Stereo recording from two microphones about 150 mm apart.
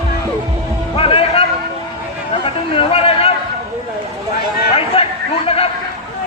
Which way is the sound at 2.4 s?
40° left (ahead or behind).